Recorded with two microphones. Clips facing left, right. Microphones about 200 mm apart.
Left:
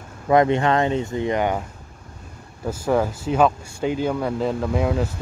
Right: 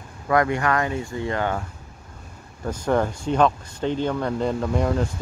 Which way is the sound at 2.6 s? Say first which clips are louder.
Left 1 dB; 5° left (ahead or behind).